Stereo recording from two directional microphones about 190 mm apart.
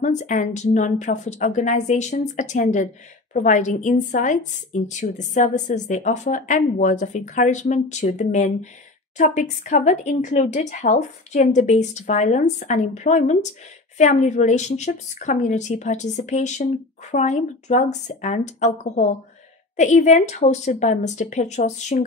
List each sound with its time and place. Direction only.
0.0 s a woman's voice: 40° left (ahead or behind)